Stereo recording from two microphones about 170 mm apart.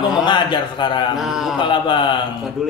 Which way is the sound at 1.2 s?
Centre (ahead or behind).